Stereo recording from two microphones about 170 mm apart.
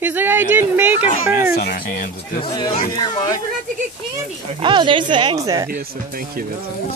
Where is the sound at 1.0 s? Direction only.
60° left (ahead or behind).